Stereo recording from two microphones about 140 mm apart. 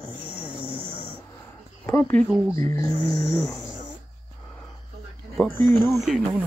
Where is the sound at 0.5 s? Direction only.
40° right (ahead or behind).